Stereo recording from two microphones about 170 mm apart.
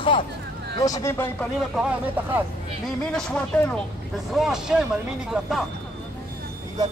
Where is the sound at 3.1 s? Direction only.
5° left (ahead or behind).